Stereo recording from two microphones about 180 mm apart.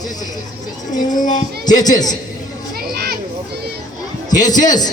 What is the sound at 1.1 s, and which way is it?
Speech, 45° left (ahead or behind).